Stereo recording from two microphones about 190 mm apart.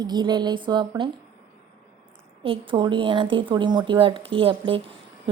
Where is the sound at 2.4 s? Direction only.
25° right (ahead or behind).